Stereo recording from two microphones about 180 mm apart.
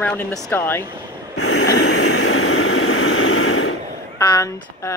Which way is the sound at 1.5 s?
70° left (ahead or behind).